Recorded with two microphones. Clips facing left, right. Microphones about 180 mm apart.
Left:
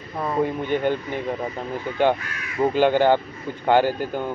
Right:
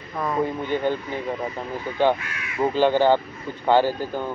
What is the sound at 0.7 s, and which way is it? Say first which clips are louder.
Speech: left 1 dB; 15° left (ahead or behind).